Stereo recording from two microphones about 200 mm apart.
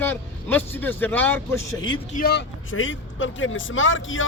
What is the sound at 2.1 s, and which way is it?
Speech, 50° left (ahead or behind).